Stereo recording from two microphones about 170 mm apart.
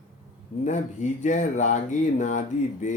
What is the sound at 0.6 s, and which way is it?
Speech, 45° left (ahead or behind).